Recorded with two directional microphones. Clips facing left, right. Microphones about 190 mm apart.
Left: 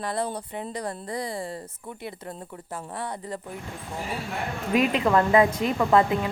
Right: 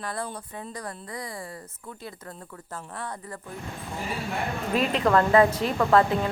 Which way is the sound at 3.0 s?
15° left (ahead or behind).